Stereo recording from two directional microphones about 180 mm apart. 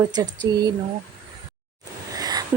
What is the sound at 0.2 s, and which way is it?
Speech, 20° right (ahead or behind).